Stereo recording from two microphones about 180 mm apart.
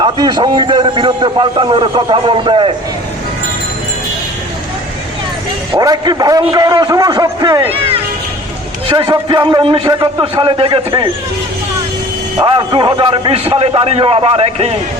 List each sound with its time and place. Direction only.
0.0 s a man's voice: 25° right (ahead or behind)
5.7 s a man's voice: 25° right (ahead or behind)
7.7 s music: 30° right (ahead or behind)
8.9 s a man's voice: 25° right (ahead or behind)
12.4 s a man's voice: 30° right (ahead or behind)